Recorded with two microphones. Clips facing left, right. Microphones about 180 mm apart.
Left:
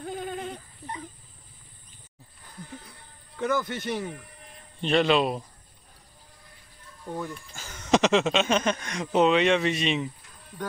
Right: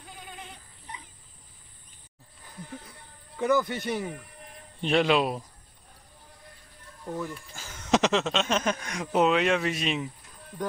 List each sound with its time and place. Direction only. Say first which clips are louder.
0.0 s goat: left 12 dB; 50° left (ahead or behind)
3.3 s speech: right 2 dB; 15° right (ahead or behind)
7.2 s speech: left 1 dB; 5° right (ahead or behind)